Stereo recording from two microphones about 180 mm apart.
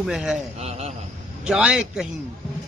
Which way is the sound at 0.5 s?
35° right (ahead or behind).